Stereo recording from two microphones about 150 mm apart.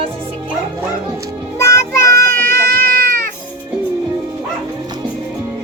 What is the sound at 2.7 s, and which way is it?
Cat, 15° left (ahead or behind).